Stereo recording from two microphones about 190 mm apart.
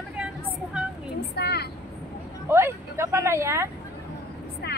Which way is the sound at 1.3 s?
60° left (ahead or behind).